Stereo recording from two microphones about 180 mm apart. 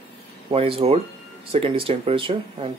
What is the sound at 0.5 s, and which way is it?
Speech, 30° right (ahead or behind).